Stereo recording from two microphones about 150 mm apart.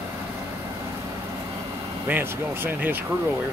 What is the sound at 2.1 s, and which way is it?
Speech, 15° right (ahead or behind).